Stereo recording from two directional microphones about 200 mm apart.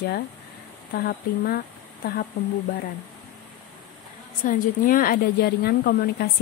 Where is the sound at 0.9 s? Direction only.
50° left (ahead or behind).